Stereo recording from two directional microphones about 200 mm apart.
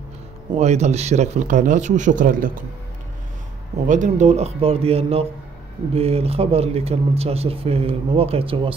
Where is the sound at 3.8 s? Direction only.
40° right (ahead or behind).